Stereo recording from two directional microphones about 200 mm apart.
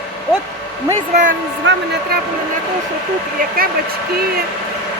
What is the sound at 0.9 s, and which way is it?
Speech, 40° right (ahead or behind).